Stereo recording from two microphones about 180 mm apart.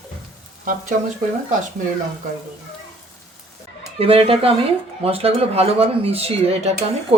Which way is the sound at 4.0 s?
30° right (ahead or behind).